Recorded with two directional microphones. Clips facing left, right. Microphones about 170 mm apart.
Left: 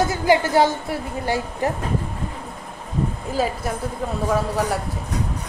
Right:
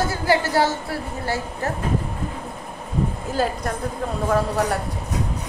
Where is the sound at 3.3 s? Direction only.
Centre (ahead or behind).